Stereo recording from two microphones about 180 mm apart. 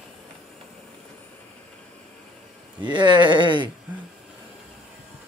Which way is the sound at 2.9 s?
25° right (ahead or behind).